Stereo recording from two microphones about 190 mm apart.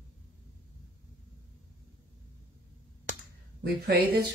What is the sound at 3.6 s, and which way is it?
Speech, 55° right (ahead or behind).